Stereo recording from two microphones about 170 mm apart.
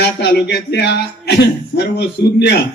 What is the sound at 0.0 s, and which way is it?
A man's voice, 80° left.